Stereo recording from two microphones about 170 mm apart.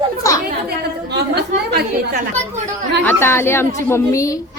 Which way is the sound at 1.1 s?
70° right (ahead or behind).